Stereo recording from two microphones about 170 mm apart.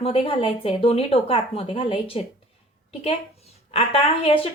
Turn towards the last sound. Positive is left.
turn(degrees=35)  # may be behind; listen again after turning